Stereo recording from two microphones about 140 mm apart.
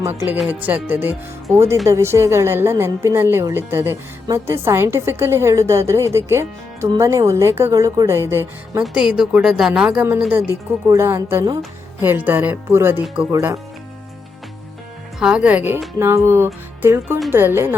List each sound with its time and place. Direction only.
0.3 s a woman's voice: 10° right (ahead or behind)
8.8 s a woman's voice: 5° right (ahead or behind)
13.3 s a woman's voice: 20° right (ahead or behind)
15.2 s a woman's voice: 10° right (ahead or behind)